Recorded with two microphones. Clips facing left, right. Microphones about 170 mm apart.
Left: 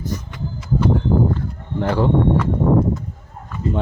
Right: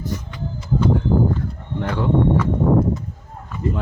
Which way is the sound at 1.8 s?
35° left (ahead or behind).